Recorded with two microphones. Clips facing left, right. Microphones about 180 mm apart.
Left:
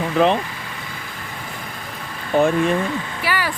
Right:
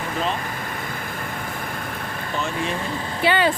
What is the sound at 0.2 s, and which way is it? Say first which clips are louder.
Speech: left 10 dB; 60° left (ahead or behind).